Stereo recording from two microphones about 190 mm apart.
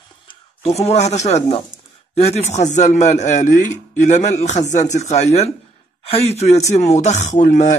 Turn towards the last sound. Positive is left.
turn(degrees=40)  # may be behind; listen again after turning